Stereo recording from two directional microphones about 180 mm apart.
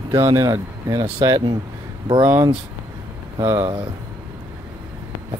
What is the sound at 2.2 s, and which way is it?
Speech, 10° right (ahead or behind).